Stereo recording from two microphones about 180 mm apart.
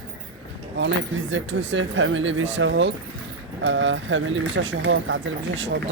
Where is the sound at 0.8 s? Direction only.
90° right.